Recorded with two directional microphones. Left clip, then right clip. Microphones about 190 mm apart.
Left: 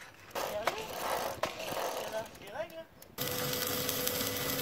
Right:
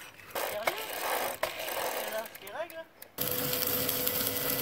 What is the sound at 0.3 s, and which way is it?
Skateboard, 10° right (ahead or behind).